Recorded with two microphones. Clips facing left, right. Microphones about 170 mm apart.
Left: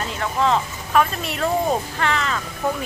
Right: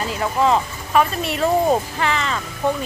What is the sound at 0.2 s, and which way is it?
Speech, 5° right (ahead or behind).